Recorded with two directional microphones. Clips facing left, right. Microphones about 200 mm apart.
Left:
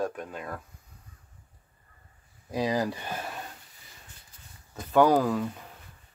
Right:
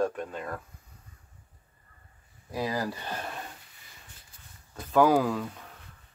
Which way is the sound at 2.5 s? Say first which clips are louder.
Left 3 dB; 20° left (ahead or behind).